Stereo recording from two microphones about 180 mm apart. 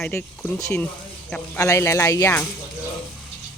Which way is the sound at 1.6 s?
15° left (ahead or behind).